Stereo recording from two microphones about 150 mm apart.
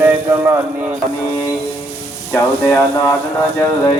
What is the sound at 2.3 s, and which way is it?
Speech, 15° left (ahead or behind).